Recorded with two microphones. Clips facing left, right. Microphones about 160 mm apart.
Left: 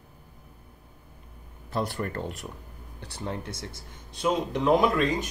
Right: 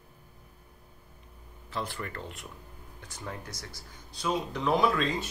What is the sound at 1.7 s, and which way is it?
Speech, 45° left (ahead or behind).